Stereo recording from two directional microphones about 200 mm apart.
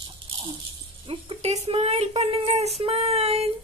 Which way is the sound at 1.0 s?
25° right (ahead or behind).